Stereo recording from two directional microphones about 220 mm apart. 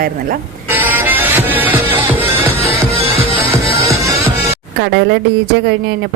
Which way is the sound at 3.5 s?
15° right (ahead or behind).